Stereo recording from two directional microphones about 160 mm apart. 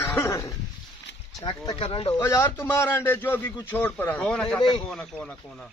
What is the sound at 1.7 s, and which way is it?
Speech, 35° left (ahead or behind).